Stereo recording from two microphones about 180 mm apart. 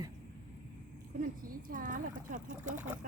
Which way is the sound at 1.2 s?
50° right (ahead or behind).